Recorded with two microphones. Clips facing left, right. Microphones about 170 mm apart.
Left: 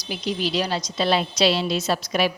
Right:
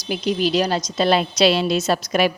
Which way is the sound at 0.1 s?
50° right (ahead or behind).